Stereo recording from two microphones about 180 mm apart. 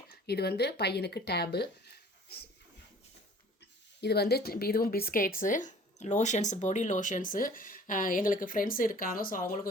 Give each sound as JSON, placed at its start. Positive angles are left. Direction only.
{"t": 0.1, "sound": "speech", "side_deg": 60}
{"t": 4.0, "sound": "a woman's voice", "side_deg": 65}